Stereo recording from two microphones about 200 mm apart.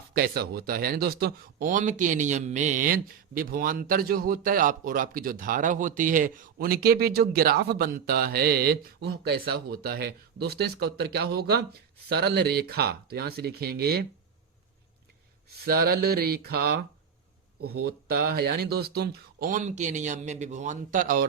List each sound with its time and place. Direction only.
0.1 s speech: 50° right (ahead or behind)
15.6 s speech: 50° right (ahead or behind)
17.6 s speech: 90° right
18.1 s speech: 50° right (ahead or behind)